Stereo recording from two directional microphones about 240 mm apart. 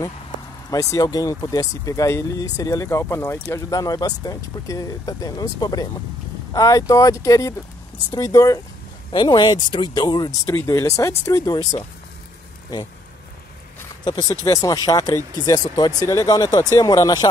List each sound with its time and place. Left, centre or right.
0.7 s speech: centre
14.0 s speech: centre